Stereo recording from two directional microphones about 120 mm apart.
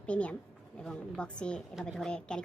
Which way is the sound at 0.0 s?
10° left (ahead or behind).